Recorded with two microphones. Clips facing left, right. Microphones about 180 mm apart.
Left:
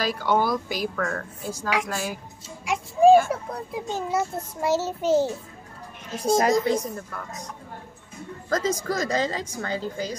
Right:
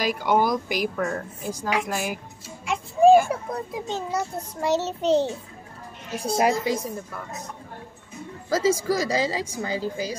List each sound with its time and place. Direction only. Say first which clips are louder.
0.0 s a woman's voice: right 1 dB; 15° right (ahead or behind)
2.7 s a sound: even; centre (ahead or behind)
3.3 s a child's voice: right 1 dB; 5° left (ahead or behind)
6.1 s a woman's voice: left 2 dB; 10° right (ahead or behind)
8.5 s a woman's voice: right 3 dB; 10° right (ahead or behind)